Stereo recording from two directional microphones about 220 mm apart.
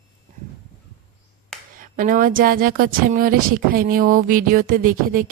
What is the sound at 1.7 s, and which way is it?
Speech, 35° right (ahead or behind).